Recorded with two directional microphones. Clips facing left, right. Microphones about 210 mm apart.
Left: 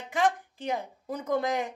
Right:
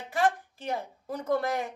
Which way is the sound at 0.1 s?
15° left (ahead or behind).